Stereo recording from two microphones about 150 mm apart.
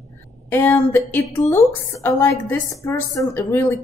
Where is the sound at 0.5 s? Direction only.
15° left (ahead or behind).